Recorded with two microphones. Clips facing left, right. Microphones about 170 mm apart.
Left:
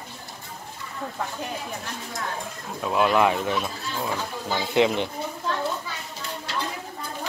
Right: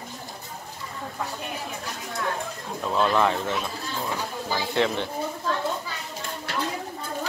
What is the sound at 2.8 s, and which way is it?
Speech, 10° left (ahead or behind).